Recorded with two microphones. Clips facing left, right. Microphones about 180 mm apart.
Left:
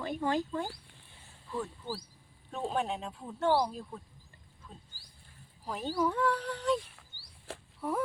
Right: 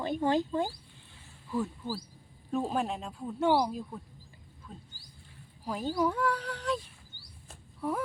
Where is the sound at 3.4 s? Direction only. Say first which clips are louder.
Right 2 dB; 15° right (ahead or behind).